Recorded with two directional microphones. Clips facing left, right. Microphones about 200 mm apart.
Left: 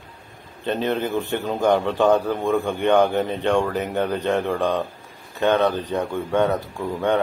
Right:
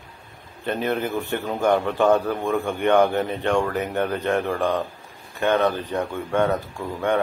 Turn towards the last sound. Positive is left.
turn(degrees=15)  # may be behind; listen again after turning